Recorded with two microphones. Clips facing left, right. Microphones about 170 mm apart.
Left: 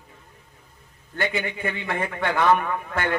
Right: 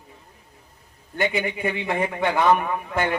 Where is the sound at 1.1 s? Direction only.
15° right (ahead or behind).